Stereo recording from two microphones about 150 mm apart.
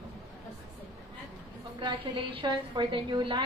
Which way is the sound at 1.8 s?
35° right (ahead or behind).